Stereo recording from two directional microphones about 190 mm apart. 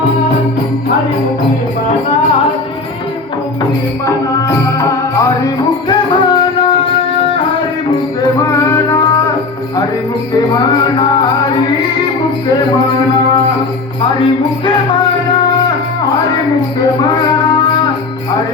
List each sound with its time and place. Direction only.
4.0 s music: 15° left (ahead or behind)
8.6 s music: 15° left (ahead or behind)